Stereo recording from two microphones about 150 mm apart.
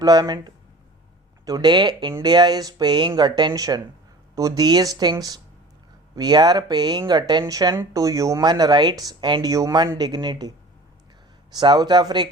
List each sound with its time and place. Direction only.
0.0 s speech: 25° right (ahead or behind)
11.5 s speech: 30° right (ahead or behind)